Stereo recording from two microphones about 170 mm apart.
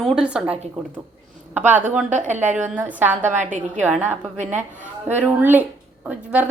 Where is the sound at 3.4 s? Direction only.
45° right (ahead or behind).